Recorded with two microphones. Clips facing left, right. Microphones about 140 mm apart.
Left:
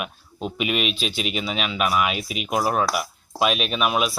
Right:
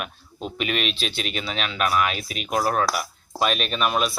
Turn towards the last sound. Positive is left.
turn(degrees=5)  # may be behind; listen again after turning